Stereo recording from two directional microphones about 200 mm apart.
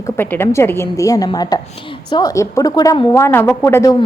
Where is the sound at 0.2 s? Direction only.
10° left (ahead or behind).